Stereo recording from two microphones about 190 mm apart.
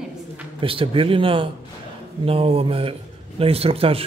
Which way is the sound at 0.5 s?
30° right (ahead or behind).